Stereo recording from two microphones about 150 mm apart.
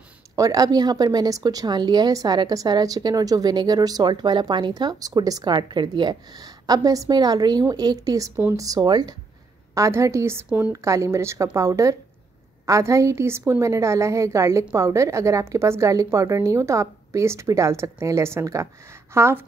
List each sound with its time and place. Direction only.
0.4 s a woman's voice: 25° right (ahead or behind)